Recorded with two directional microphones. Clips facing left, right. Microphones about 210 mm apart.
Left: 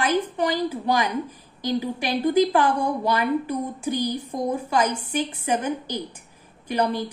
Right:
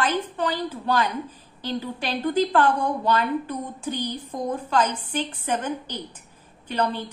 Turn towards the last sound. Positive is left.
turn(degrees=10)  # may be behind; listen again after turning